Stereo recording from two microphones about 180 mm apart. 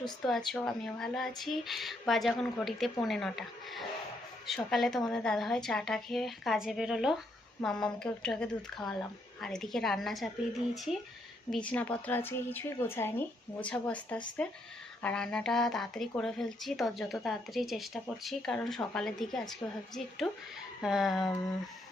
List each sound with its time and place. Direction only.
0.0 s speech: centre (ahead or behind)
11.5 s speech: 5° left (ahead or behind)